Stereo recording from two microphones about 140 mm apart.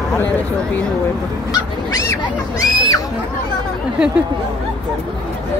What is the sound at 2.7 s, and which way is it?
Speech, 30° left (ahead or behind).